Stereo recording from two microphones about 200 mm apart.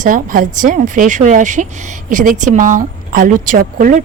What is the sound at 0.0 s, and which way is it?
A woman's voice, 45° right (ahead or behind).